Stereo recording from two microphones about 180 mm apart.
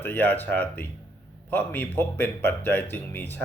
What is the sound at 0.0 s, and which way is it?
Speech, 10° left (ahead or behind).